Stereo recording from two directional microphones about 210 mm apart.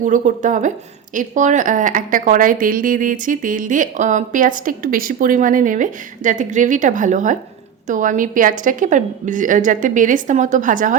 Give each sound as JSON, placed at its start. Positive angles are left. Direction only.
{"t": 0.0, "sound": "a woman's voice", "side_deg": -35}